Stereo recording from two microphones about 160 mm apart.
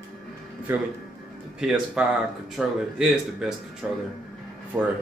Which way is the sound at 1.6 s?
5° right (ahead or behind).